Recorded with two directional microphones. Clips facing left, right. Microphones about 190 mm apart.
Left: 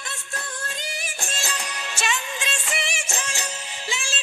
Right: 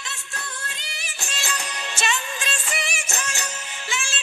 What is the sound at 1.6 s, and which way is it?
Music, 10° left (ahead or behind).